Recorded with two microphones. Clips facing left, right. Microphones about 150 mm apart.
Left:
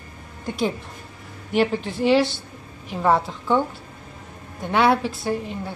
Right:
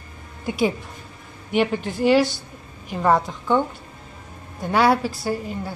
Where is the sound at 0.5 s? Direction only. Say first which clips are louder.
Right 3 dB; 5° right (ahead or behind).